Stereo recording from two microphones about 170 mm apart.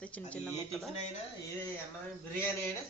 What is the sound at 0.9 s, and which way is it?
Speech, 40° left (ahead or behind).